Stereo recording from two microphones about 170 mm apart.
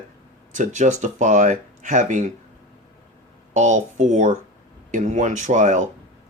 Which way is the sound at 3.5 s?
45° right (ahead or behind).